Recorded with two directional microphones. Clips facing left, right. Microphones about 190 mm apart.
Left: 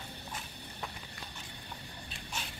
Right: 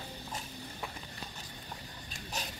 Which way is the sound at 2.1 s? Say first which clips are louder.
Right 3 dB; 40° right (ahead or behind).